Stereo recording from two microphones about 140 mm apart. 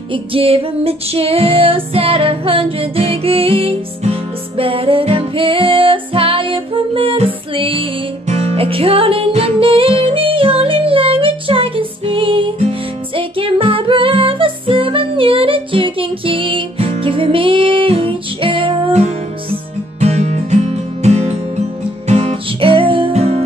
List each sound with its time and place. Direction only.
0.1 s music: 40° right (ahead or behind)
20.0 s music: 55° right (ahead or behind)